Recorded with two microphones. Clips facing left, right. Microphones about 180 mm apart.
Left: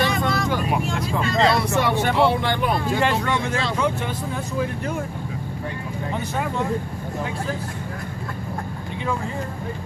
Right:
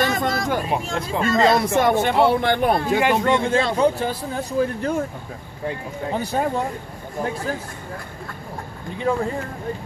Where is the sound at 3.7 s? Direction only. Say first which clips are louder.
Right 4 dB; 35° right (ahead or behind).